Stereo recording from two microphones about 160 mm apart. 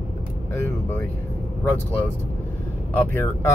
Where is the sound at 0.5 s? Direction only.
10° left (ahead or behind).